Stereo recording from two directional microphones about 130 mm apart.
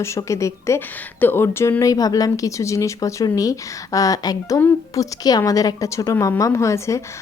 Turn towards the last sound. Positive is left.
turn(degrees=20)  # may be behind; listen again after turning